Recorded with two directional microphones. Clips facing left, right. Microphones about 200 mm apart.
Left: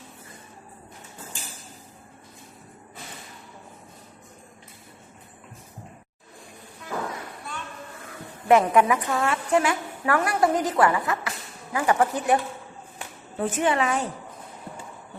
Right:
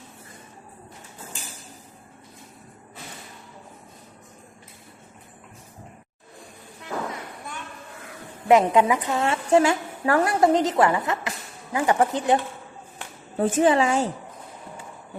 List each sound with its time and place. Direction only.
8.4 s a woman's voice: 20° right (ahead or behind)
13.3 s a woman's voice: 35° right (ahead or behind)